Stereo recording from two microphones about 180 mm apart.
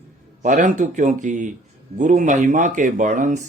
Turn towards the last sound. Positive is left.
turn(degrees=-40)  # may be behind; listen again after turning